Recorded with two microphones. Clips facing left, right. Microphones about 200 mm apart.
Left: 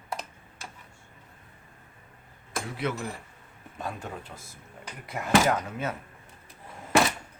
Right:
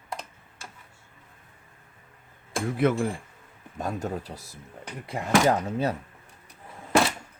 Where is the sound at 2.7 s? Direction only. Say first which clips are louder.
Right 9 dB; 50° right (ahead or behind); by 5.9 s 30° right (ahead or behind).